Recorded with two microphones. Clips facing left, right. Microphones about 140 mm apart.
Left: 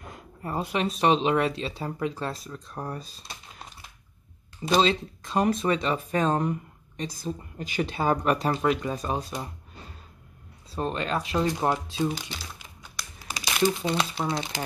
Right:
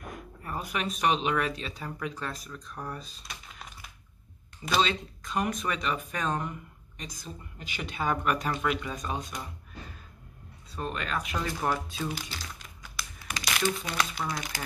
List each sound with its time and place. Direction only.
0.0 s speech: 25° left (ahead or behind)
4.6 s speech: 25° left (ahead or behind)
10.7 s speech: 30° left (ahead or behind)